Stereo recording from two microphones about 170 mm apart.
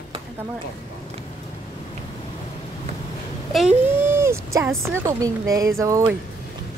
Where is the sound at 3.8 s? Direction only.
15° right (ahead or behind).